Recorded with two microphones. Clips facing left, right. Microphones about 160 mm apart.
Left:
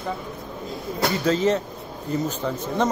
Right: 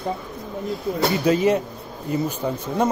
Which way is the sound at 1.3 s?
10° right (ahead or behind).